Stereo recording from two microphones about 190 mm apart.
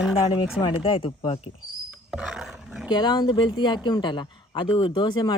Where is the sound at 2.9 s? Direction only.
25° left (ahead or behind).